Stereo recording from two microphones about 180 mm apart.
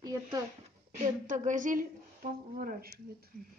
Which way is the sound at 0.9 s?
40° right (ahead or behind).